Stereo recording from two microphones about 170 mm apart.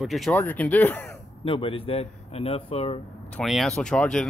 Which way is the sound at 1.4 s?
30° left (ahead or behind).